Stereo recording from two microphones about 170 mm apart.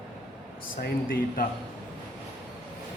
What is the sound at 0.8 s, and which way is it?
Speech, 60° left (ahead or behind).